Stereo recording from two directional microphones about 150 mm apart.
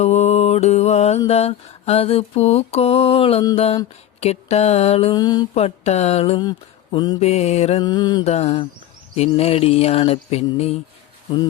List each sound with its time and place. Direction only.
0.0 s mantra: 50° left (ahead or behind)
3.5 s music: 40° left (ahead or behind)
4.2 s mantra: 45° left (ahead or behind)
5.1 s music: 25° left (ahead or behind)
5.5 s mantra: 45° left (ahead or behind)
6.4 s speech: 30° left (ahead or behind)
7.2 s mantra: 45° left (ahead or behind)
7.8 s music: 30° left (ahead or behind)
8.2 s mantra: 45° left (ahead or behind)
9.4 s music: 40° left (ahead or behind)